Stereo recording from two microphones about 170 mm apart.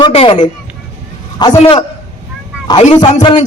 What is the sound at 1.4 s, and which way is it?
Speech, 25° left (ahead or behind).